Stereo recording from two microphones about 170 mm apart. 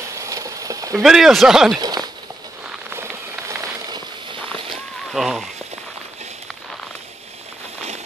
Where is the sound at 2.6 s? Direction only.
10° right (ahead or behind); by 4.4 s 25° right (ahead or behind).